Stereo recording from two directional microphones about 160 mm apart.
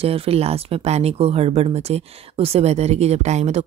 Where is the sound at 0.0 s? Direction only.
35° right (ahead or behind).